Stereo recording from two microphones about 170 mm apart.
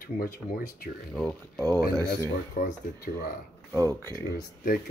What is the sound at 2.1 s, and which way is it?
Speech, 60° left (ahead or behind).